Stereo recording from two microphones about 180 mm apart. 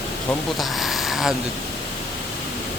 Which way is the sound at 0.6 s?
Centre (ahead or behind).